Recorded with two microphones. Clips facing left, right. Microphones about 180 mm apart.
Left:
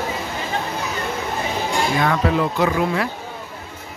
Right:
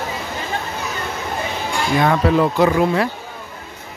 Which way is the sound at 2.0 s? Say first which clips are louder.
Right 6 dB; 30° right (ahead or behind).